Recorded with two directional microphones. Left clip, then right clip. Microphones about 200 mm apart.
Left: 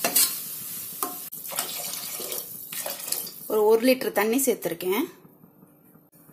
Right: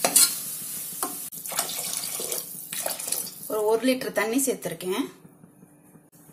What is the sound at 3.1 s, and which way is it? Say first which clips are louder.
Speech: left 6 dB; 30° left (ahead or behind).